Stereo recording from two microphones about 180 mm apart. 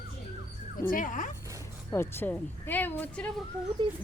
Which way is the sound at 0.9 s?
50° left (ahead or behind).